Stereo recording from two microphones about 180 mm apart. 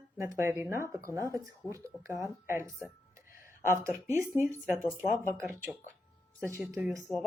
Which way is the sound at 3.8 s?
15° right (ahead or behind).